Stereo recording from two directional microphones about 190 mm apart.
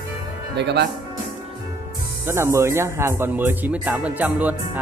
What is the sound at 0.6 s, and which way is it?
Speech, 65° right (ahead or behind).